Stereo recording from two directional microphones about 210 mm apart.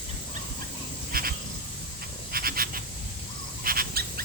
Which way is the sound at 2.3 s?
45° right (ahead or behind).